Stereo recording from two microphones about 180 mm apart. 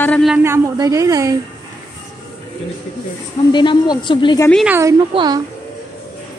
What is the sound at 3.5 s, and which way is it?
Speech, 25° left (ahead or behind).